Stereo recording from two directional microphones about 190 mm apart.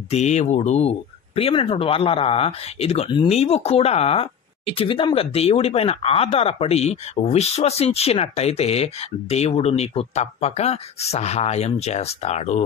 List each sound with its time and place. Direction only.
0.1 s speech: 35° left (ahead or behind)